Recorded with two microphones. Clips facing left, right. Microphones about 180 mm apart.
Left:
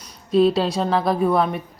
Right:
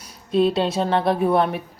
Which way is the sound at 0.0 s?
5° right (ahead or behind).